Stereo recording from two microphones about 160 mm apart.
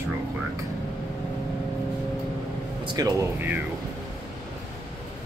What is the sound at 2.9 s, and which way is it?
Speech, 25° right (ahead or behind).